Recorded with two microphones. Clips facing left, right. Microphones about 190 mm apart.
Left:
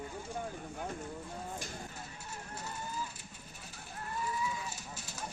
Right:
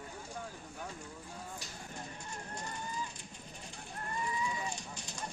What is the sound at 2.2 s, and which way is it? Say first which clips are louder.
Speech: left 2 dB; 5° left (ahead or behind).